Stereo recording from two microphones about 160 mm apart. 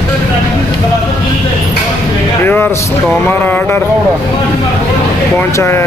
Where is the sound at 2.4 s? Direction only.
15° left (ahead or behind).